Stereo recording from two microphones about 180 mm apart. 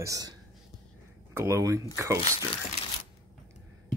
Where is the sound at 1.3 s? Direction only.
15° right (ahead or behind).